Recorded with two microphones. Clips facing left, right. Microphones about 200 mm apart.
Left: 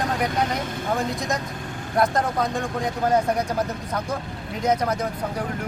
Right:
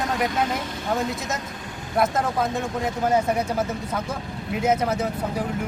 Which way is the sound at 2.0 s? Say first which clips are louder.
Even; 5° right (ahead or behind).